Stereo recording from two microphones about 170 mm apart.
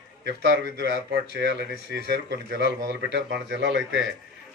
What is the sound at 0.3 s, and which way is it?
Speech, 80° right.